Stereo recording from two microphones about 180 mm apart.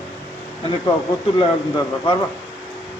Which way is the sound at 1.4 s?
25° left (ahead or behind).